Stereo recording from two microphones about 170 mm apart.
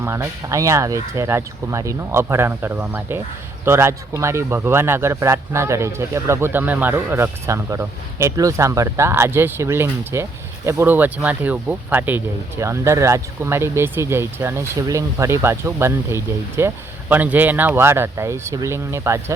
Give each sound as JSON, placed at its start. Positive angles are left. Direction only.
{"t": 0.0, "sound": "speech", "side_deg": -15}